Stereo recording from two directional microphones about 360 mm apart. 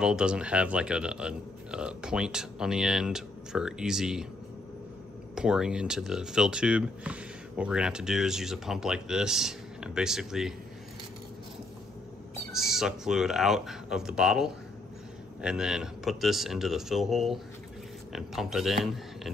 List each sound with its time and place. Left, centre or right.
0.0 s speech: centre
5.3 s speech: centre
12.5 s speech: centre